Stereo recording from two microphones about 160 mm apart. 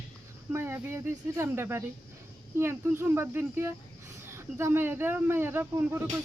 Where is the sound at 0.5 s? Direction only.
15° right (ahead or behind).